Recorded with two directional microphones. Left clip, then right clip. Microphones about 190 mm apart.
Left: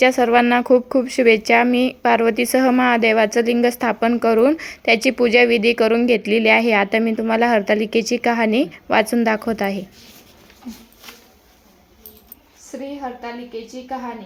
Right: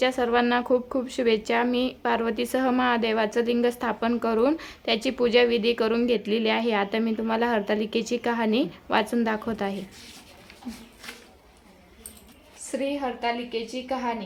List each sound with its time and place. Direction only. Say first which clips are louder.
0.0 s speech: left 9 dB; 25° left (ahead or behind)
13.0 s a woman's voice: right 1 dB; 5° right (ahead or behind)